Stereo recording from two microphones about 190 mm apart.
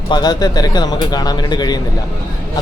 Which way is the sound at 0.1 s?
20° left (ahead or behind).